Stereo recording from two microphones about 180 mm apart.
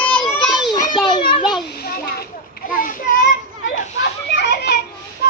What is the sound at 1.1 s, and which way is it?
Children playing, 25° left (ahead or behind).